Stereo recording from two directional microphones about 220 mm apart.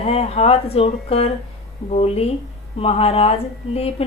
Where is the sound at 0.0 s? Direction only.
25° left (ahead or behind).